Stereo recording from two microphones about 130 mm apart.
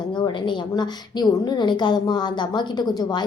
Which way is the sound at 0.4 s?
35° left (ahead or behind).